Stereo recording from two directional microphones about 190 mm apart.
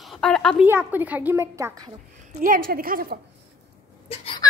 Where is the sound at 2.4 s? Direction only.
50° right (ahead or behind).